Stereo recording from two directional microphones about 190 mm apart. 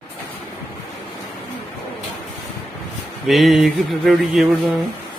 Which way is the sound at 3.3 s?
Centre (ahead or behind).